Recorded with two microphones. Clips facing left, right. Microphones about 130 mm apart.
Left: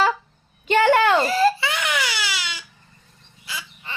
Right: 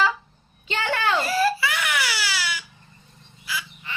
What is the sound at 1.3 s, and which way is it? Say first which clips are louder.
Baby cry: left 3 dB; 25° left (ahead or behind).